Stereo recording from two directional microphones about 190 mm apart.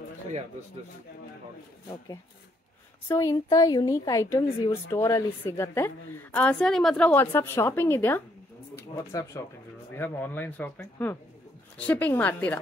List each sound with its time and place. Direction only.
3.1 s speech: 15° left (ahead or behind)